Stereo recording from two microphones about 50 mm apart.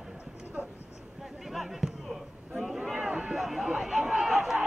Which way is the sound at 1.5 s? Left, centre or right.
Centre.